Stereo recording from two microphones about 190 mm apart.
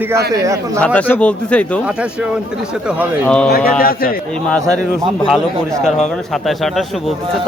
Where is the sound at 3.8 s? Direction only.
50° left (ahead or behind).